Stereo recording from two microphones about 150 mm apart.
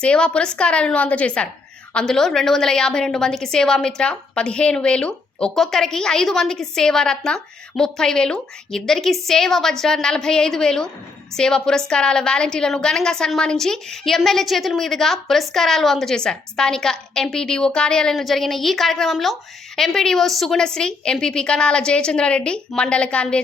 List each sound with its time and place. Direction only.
0.0 s a woman's voice: 5° left (ahead or behind)